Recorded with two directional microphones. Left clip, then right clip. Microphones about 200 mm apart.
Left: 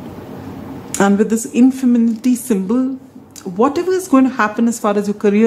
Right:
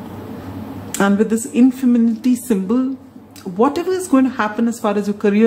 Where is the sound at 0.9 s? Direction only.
10° left (ahead or behind).